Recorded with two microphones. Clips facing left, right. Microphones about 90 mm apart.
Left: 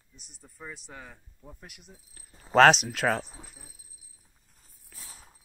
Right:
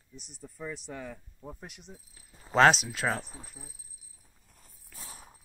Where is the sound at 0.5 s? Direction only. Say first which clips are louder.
Right 4 dB; 10° left (ahead or behind).